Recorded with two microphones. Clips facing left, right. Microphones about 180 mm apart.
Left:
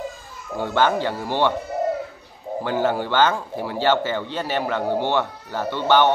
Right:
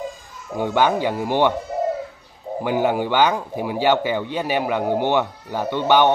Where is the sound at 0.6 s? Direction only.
15° right (ahead or behind).